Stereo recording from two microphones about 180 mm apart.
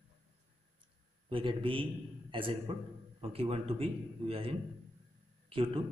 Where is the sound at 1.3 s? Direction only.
30° right (ahead or behind).